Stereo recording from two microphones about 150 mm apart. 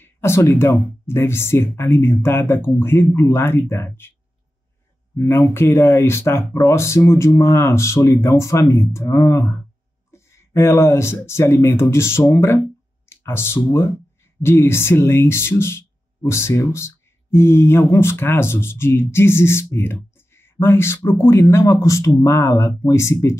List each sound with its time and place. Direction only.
0.0 s speech: 15° left (ahead or behind)
5.1 s speech: 20° left (ahead or behind)
13.1 s a sound: 15° left (ahead or behind)
13.6 s speech: 20° left (ahead or behind)